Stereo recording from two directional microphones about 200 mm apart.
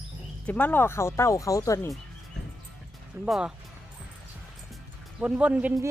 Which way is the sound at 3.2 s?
Centre (ahead or behind).